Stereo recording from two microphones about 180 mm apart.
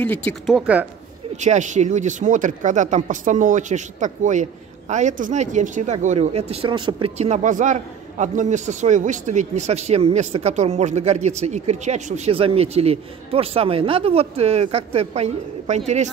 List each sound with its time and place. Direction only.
0.0 s speech: 10° left (ahead or behind)
0.6 s speech: 10° right (ahead or behind)
1.3 s speech: 40° right (ahead or behind)
7.2 s a man's voice: 40° right (ahead or behind)